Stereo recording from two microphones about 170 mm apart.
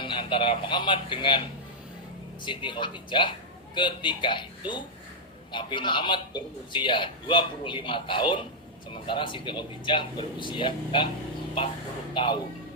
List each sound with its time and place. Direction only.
0.0 s a man's voice: 30° left (ahead or behind)
2.4 s a man's voice: 30° left (ahead or behind)
12.1 s speech: 30° left (ahead or behind)